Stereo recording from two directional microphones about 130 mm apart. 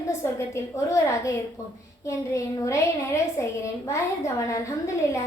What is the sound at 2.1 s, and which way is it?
A woman's voice, 20° left (ahead or behind).